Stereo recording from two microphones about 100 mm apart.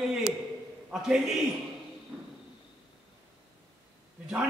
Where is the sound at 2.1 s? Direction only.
20° right (ahead or behind).